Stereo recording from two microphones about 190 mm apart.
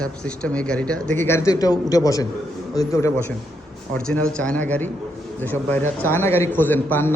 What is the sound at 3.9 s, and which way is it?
A man's voice, 5° left (ahead or behind).